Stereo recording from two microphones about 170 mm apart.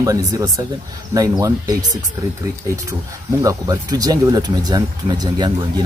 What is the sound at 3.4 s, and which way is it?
Speech, 20° right (ahead or behind).